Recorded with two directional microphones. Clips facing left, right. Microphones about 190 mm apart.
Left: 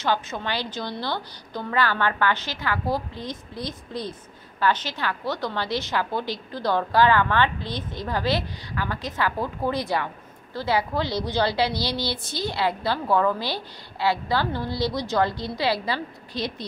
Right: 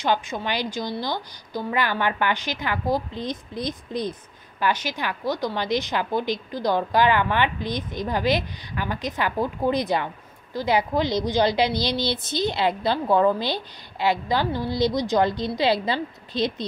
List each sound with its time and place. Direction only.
0.0 s a woman's voice: 15° right (ahead or behind)